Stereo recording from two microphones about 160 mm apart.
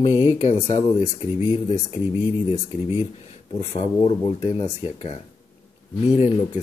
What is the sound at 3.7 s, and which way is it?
Speech, 40° left (ahead or behind).